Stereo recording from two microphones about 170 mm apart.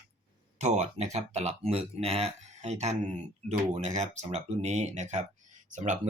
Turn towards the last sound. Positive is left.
turn(degrees=-45)  # may be behind; listen again after turning